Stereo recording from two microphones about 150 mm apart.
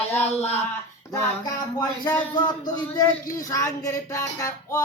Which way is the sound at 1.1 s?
25° left (ahead or behind).